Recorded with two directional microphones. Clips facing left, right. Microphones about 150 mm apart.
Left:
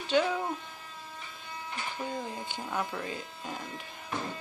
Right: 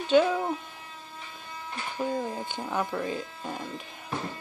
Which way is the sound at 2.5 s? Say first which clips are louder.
Right 3 dB; 15° right (ahead or behind).